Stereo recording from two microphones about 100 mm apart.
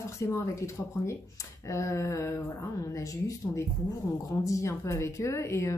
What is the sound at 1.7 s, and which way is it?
Speech, 30° left (ahead or behind).